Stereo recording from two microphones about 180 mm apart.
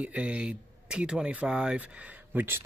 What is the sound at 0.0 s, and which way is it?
Speech, 5° right (ahead or behind).